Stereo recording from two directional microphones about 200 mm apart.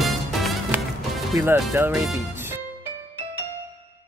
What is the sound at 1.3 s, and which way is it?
Speech, 15° right (ahead or behind).